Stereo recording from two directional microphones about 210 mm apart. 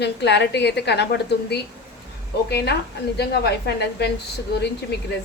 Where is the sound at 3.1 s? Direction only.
50° left (ahead or behind).